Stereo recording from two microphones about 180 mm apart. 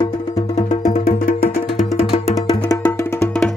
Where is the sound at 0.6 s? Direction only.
45° left (ahead or behind).